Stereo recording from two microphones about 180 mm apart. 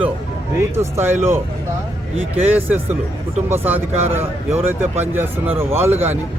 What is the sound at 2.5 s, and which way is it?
Speech, 10° right (ahead or behind).